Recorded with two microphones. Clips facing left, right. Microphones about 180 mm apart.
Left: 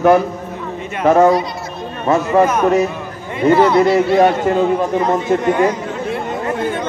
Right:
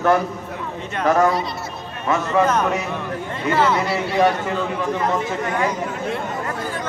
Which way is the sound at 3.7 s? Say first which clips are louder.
Left 9 dB; 35° left (ahead or behind).